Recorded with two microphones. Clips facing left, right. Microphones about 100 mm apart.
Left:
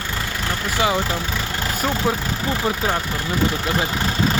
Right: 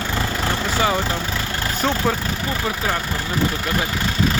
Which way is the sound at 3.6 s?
15° left (ahead or behind).